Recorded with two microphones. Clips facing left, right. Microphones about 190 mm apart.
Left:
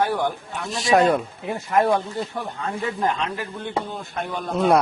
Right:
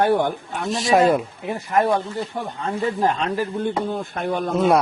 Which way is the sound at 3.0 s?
35° right (ahead or behind).